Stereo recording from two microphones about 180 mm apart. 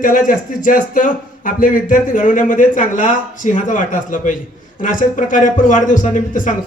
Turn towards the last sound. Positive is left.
turn(degrees=45)  # may be behind; listen again after turning